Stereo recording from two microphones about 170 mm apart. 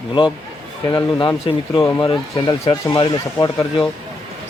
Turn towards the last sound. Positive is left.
turn(degrees=25)  # may be behind; listen again after turning